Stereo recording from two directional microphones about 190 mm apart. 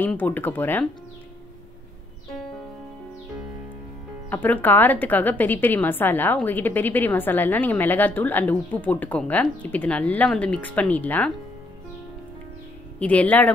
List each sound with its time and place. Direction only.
0.0 s a woman's voice: 10° left (ahead or behind)
4.3 s a woman's voice: 10° left (ahead or behind)
13.0 s a woman's voice: 10° left (ahead or behind)